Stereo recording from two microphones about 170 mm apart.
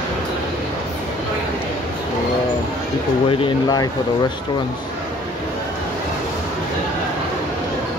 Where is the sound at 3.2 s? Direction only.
25° left (ahead or behind).